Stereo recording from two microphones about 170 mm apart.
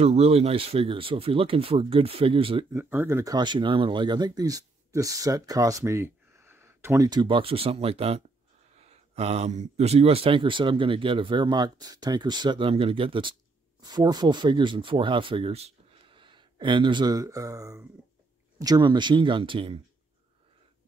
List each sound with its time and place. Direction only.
0.0 s speech: 35° right (ahead or behind)
2.7 s speech: 15° right (ahead or behind); by 19.8 s 30° right (ahead or behind)